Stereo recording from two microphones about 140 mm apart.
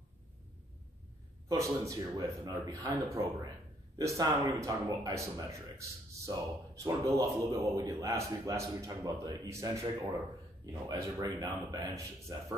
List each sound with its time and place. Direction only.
1.5 s a man's voice: 25° right (ahead or behind)